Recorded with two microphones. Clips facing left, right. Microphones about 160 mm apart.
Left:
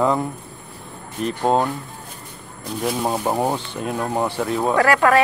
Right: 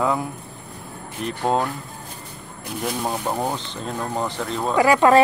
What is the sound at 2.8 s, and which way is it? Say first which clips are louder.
Speech: left 4 dB; 10° left (ahead or behind).